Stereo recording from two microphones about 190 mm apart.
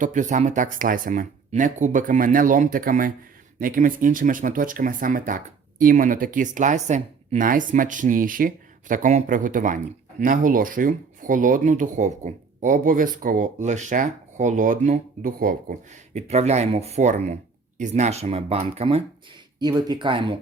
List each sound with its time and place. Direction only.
0.0 s speech: 40° right (ahead or behind)
16.1 s speech: 35° right (ahead or behind)